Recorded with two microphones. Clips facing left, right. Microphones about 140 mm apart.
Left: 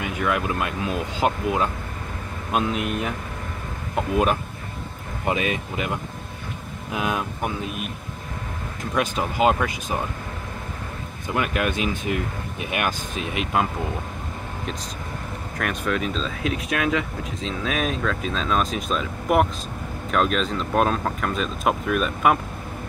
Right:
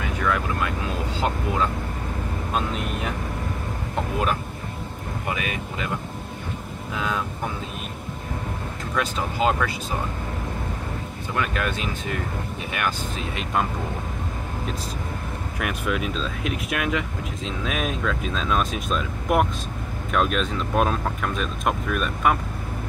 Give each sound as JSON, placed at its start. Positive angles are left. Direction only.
{"t": 0.0, "sound": "speech", "side_deg": 15}
{"t": 5.2, "sound": "speech", "side_deg": 25}
{"t": 8.9, "sound": "speech", "side_deg": 15}
{"t": 11.3, "sound": "speech", "side_deg": 15}
{"t": 15.6, "sound": "speech", "side_deg": -10}